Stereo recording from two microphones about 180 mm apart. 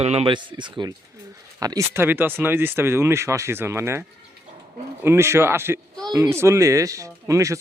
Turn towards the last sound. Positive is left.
turn(degrees=-15)  # may be behind; listen again after turning